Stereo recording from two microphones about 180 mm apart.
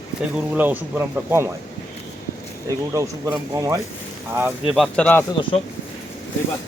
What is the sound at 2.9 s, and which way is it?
Speech, 15° right (ahead or behind).